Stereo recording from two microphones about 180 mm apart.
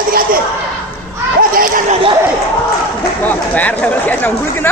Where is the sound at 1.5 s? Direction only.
50° right (ahead or behind).